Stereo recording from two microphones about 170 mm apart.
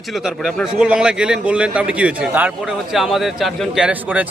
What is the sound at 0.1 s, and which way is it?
A man's voice, centre (ahead or behind).